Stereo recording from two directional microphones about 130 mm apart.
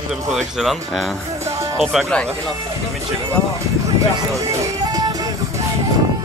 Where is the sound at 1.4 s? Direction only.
25° right (ahead or behind).